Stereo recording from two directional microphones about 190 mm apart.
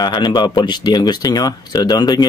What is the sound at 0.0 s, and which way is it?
Speech, 25° left (ahead or behind).